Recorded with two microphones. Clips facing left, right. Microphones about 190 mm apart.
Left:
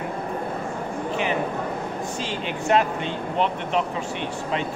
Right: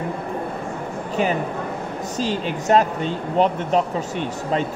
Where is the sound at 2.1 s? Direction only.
40° right (ahead or behind).